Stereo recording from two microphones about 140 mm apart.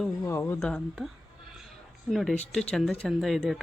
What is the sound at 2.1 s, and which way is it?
Speech, centre (ahead or behind).